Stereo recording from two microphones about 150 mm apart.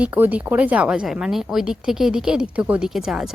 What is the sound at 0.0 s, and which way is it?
A woman's voice, 10° right (ahead or behind).